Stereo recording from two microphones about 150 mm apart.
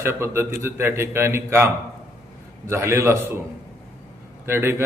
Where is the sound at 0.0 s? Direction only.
15° right (ahead or behind).